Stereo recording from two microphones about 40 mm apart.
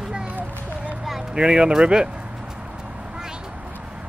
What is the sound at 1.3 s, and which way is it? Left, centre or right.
Speech, right.